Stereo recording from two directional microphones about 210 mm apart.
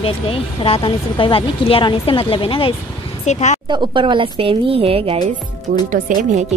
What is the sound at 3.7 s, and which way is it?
A woman's voice, 20° right (ahead or behind).